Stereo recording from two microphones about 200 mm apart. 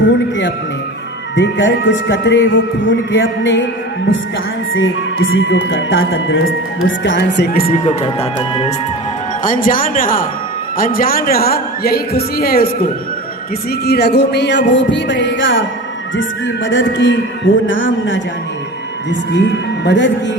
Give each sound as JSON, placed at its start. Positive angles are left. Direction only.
{"t": 0.0, "sound": "music", "side_deg": 65}
{"t": 1.4, "sound": "a man's voice", "side_deg": 60}
{"t": 4.7, "sound": "a man's voice", "side_deg": 70}
{"t": 7.9, "sound": "speech", "side_deg": 25}
{"t": 9.4, "sound": "a woman's voice", "side_deg": 40}
{"t": 13.8, "sound": "a man's voice", "side_deg": 55}
{"t": 16.6, "sound": "speech", "side_deg": 70}
{"t": 19.8, "sound": "a man's voice", "side_deg": 60}